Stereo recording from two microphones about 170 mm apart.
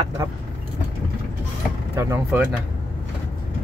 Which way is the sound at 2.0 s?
15° right (ahead or behind).